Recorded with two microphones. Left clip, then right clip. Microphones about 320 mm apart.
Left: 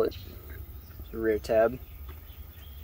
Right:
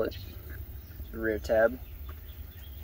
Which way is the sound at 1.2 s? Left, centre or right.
Left.